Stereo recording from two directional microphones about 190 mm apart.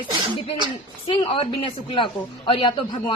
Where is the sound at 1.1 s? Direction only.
25° left (ahead or behind).